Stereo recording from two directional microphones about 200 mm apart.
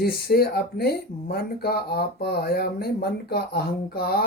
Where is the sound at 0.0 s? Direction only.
50° left (ahead or behind).